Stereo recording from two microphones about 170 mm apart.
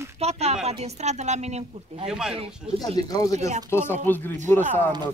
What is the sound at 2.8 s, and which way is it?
Speech, 25° left (ahead or behind).